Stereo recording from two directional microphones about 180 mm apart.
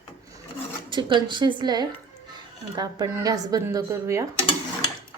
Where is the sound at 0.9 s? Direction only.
25° right (ahead or behind).